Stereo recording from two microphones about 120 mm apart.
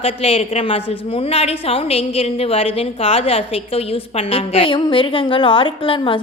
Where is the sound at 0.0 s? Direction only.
55° left (ahead or behind).